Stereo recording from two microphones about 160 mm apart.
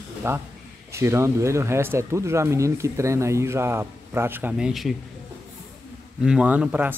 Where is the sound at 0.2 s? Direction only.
15° right (ahead or behind).